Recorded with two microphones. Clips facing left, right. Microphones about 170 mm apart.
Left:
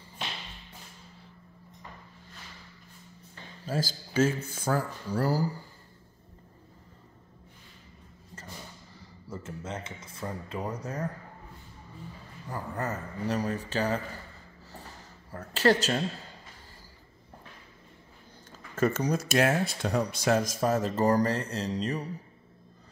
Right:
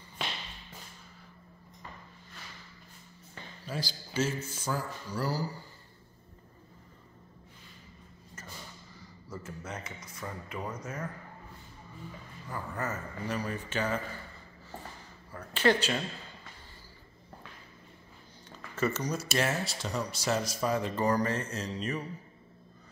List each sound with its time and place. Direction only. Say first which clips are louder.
3.6 s speech: left 6 dB; 45° left (ahead or behind)
9.3 s a man's voice: left 3 dB; 25° left (ahead or behind)
12.4 s a man's voice: left 2 dB; 35° left (ahead or behind)
15.3 s a sound: left 2 dB; 40° left (ahead or behind)
18.8 s speech: left 5 dB; 50° left (ahead or behind); by 22.0 s 35° left (ahead or behind)